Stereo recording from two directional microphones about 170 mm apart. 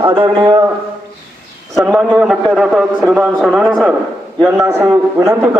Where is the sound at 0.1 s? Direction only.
25° right (ahead or behind).